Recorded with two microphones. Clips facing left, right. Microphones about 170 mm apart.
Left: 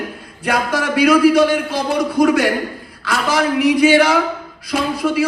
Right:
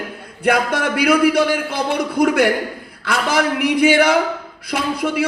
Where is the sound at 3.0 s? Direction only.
55° right (ahead or behind).